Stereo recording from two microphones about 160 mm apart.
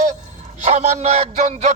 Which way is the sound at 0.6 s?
45° right (ahead or behind).